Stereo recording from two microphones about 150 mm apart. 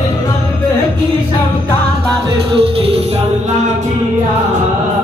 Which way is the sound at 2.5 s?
40° right (ahead or behind).